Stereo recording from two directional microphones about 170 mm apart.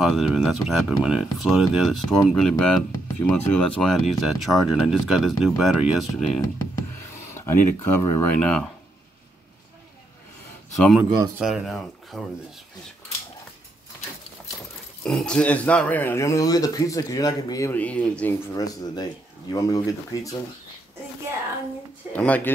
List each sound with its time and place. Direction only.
0.0 s speech: 5° right (ahead or behind)
7.2 s speech: 15° left (ahead or behind)
11.0 s speech: 5° right (ahead or behind)
15.0 s speech: 5° left (ahead or behind)
18.5 s speech: 20° left (ahead or behind)
22.1 s speech: 10° left (ahead or behind)